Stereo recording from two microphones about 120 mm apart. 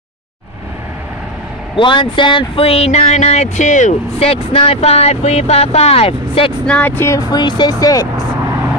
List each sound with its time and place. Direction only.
1.8 s speech: 45° left (ahead or behind); by 3.9 s 90° left
4.2 s speech: 55° left (ahead or behind)
6.6 s speech: 10° left (ahead or behind)
7.2 s speech: 35° left (ahead or behind)